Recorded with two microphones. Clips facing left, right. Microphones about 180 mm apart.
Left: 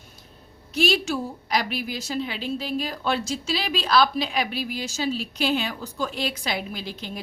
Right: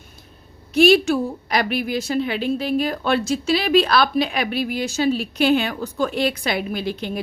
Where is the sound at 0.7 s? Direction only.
60° right (ahead or behind).